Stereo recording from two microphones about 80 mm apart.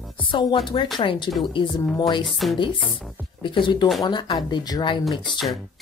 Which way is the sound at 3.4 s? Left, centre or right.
Left.